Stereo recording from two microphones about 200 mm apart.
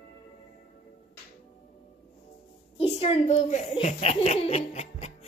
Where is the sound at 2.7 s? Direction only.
30° left (ahead or behind).